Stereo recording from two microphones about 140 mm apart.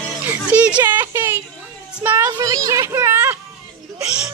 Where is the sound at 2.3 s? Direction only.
25° right (ahead or behind).